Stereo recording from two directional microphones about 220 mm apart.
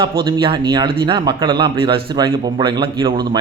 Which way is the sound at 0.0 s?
20° right (ahead or behind).